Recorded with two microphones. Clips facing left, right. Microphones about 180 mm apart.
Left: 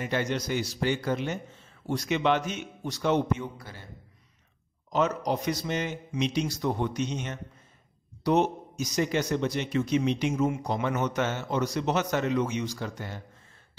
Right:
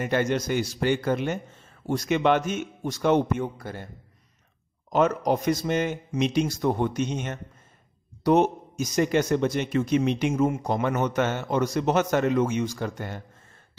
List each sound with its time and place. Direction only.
0.0 s a man's voice: 50° right (ahead or behind)
4.9 s a man's voice: 50° right (ahead or behind)